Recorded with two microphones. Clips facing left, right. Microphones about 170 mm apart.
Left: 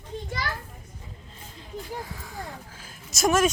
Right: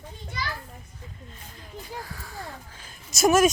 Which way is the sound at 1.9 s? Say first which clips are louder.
Left 2 dB; 20° left (ahead or behind).